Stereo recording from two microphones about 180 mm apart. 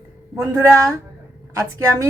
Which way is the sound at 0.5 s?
15° right (ahead or behind).